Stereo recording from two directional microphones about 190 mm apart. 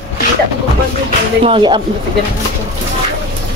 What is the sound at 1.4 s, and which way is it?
Speech, 25° right (ahead or behind).